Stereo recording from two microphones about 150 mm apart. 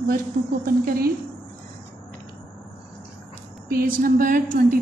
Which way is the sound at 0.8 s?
80° right.